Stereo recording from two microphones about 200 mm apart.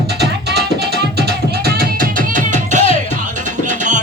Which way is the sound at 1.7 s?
40° right (ahead or behind).